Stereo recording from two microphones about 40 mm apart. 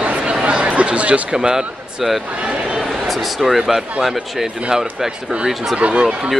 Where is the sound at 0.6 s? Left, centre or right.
Right.